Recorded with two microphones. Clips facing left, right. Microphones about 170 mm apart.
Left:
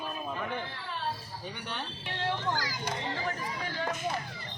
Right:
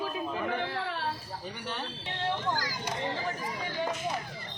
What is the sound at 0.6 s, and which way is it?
Speech, 80° right.